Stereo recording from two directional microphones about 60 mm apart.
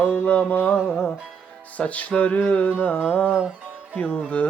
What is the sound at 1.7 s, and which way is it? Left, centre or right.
Music, left.